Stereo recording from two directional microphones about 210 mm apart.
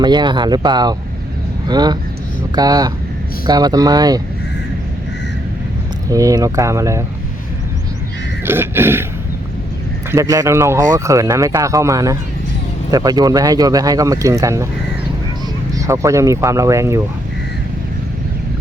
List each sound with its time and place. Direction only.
0.0 s speech: 20° right (ahead or behind)
6.1 s speech: 15° right (ahead or behind)
8.4 s speech: 10° right (ahead or behind)
10.1 s speech: 15° right (ahead or behind)
15.7 s speech: 15° right (ahead or behind)